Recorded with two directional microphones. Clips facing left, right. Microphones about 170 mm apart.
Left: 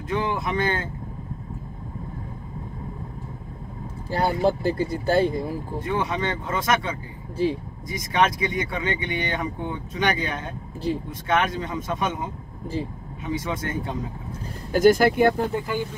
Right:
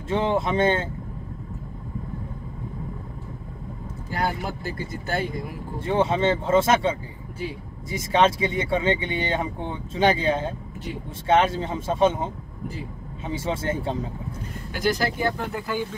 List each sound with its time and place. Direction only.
0.1 s speech: 25° right (ahead or behind)
3.8 s speech: 30° left (ahead or behind)
5.8 s speech: 25° right (ahead or behind)
14.7 s speech: 50° left (ahead or behind)
15.5 s speech: 15° left (ahead or behind)